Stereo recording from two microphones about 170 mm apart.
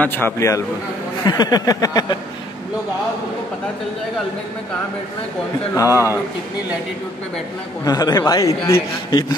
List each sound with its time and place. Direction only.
0.0 s a man's voice: 10° left (ahead or behind)
5.8 s speech: 20° left (ahead or behind)
7.8 s speech: 20° left (ahead or behind)